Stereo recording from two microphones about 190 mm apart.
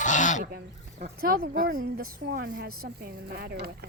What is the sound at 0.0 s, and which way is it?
Goose, 40° left (ahead or behind).